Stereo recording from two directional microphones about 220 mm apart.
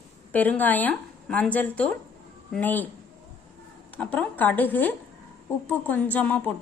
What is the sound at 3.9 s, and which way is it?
A woman's voice, 5° left (ahead or behind).